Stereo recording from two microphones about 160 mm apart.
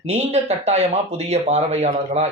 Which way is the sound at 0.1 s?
40° right (ahead or behind).